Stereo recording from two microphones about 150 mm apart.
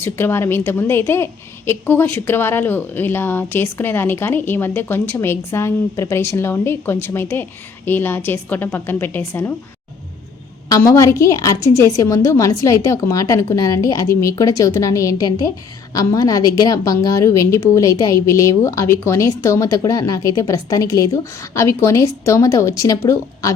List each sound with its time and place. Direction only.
0.0 s a woman's voice: 15° left (ahead or behind)
10.7 s a woman's voice: 20° left (ahead or behind)